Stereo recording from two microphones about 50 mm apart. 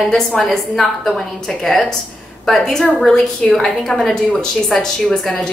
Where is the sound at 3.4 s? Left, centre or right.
Left.